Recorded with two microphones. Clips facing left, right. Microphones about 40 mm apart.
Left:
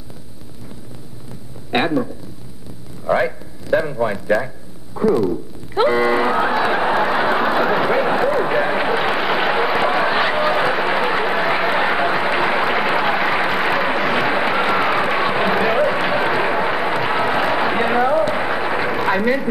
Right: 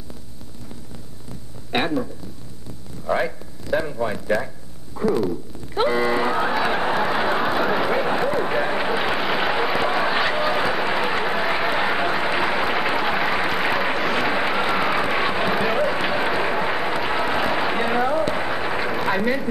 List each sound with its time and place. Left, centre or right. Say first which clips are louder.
1.7 s speech: left 4 dB; centre
3.1 s a man's voice: left 5 dB; centre
4.9 s run: left 5 dB; centre